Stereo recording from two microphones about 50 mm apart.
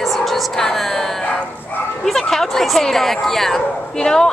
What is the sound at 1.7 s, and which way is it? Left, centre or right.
Speech, left.